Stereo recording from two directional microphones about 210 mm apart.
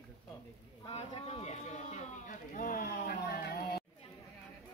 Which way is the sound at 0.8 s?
25° left (ahead or behind).